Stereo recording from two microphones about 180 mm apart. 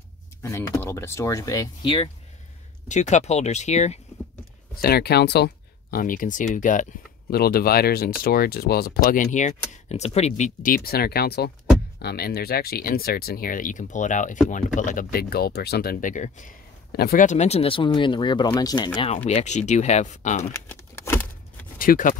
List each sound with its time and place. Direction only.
0.4 s speech: 15° left (ahead or behind)
2.9 s speech: 40° left (ahead or behind)
4.8 s speech: 60° left (ahead or behind); by 16.5 s 45° left (ahead or behind)
16.9 s speech: 55° left (ahead or behind); by 18.9 s 20° left (ahead or behind)
19.1 s speech: 35° left (ahead or behind)
20.5 s a sound: 15° left (ahead or behind)
21.7 s speech: 50° left (ahead or behind)